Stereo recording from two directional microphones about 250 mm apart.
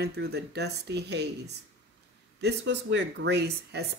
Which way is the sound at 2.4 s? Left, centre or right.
Right.